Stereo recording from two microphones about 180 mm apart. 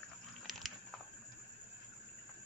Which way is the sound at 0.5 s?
Centre (ahead or behind).